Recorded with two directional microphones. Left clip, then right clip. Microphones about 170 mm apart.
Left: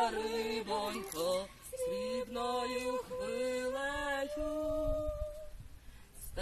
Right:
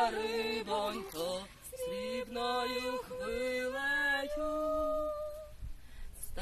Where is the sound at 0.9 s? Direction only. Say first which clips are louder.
Left 3 dB; 30° right (ahead or behind).